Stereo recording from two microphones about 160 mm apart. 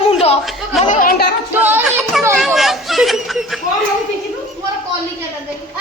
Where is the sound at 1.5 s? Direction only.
10° right (ahead or behind).